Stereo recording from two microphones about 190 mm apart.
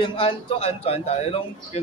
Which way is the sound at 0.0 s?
30° left (ahead or behind).